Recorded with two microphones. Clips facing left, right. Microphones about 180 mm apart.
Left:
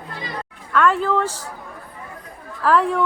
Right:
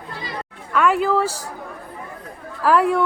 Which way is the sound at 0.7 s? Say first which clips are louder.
Even; 10° right (ahead or behind).